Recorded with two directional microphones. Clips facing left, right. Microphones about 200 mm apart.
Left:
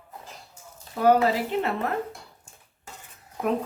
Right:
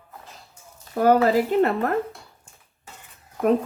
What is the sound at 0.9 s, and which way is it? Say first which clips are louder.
Speech: right 3 dB; 45° right (ahead or behind).